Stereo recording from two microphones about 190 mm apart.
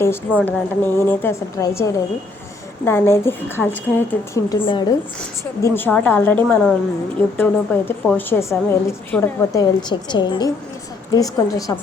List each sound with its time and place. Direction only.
0.0 s a woman's voice: 10° left (ahead or behind)
4.6 s a woman's voice: 25° left (ahead or behind)
5.6 s a woman's voice: 10° left (ahead or behind)